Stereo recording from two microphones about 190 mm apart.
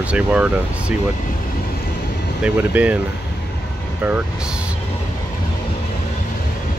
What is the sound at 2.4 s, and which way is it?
Speech, 10° right (ahead or behind).